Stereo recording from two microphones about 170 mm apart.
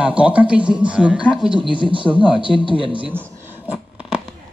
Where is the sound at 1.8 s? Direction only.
30° right (ahead or behind).